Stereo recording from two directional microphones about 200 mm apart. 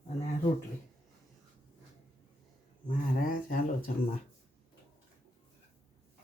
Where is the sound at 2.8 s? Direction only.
40° left (ahead or behind).